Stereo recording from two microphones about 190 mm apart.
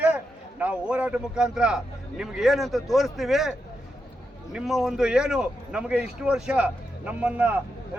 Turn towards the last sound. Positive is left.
turn(degrees=-10)  # may be behind; listen again after turning